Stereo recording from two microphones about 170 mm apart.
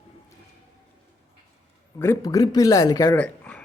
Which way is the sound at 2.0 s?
15° left (ahead or behind).